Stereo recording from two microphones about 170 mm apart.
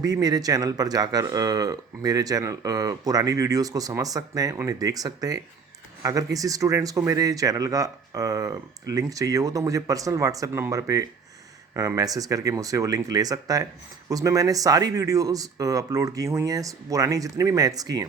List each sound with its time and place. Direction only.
0.0 s speech: 20° right (ahead or behind)